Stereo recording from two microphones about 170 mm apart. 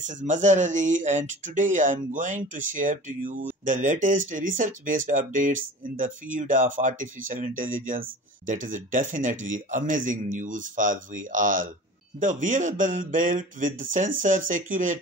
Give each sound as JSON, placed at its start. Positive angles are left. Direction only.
{"t": 0.0, "sound": "speech", "side_deg": -45}